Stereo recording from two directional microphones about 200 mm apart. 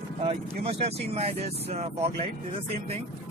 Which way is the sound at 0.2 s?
30° right (ahead or behind).